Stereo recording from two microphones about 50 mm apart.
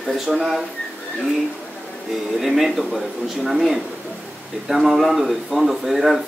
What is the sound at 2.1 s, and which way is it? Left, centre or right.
Speech, centre.